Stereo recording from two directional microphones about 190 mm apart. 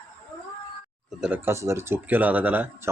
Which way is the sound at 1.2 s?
10° right (ahead or behind).